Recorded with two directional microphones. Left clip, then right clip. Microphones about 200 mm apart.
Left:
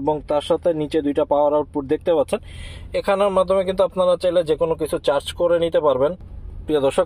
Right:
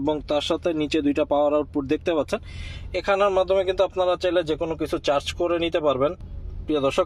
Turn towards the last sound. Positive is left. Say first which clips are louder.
# left 4 dB
turn(degrees=15)  # may be behind; listen again after turning